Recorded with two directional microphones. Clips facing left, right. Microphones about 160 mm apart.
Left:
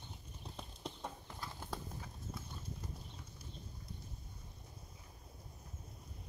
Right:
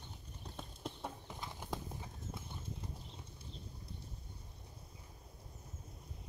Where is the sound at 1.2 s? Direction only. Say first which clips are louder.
Right 1 dB; 15° right (ahead or behind).